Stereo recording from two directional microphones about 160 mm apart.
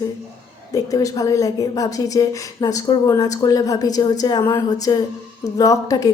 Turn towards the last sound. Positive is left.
turn(degrees=20)  # may be behind; listen again after turning